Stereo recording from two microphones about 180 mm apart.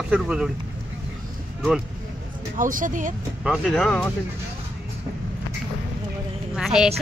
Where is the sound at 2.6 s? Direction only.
50° right (ahead or behind).